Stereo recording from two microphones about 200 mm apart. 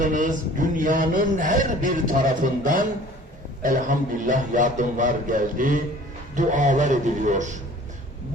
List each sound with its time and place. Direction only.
0.0 s a man's voice: 40° right (ahead or behind)